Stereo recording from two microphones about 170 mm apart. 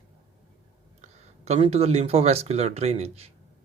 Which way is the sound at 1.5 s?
35° right (ahead or behind).